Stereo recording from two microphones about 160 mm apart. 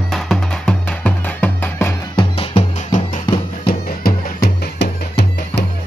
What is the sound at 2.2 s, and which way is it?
Music, 40° left (ahead or behind).